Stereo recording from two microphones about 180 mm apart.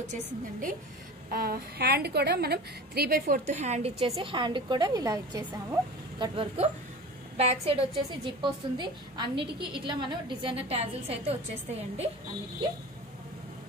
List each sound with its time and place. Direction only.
0.1 s a woman's voice: 45° right (ahead or behind)
1.3 s a woman's voice: 55° right (ahead or behind); by 11.3 s 35° right (ahead or behind)